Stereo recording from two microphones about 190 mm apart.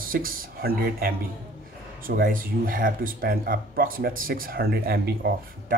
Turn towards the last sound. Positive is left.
turn(degrees=-55)  # may be behind; listen again after turning